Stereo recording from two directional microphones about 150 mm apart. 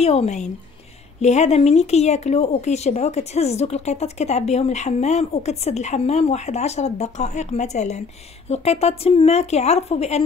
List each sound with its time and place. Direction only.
0.0 s speech: 45° left (ahead or behind)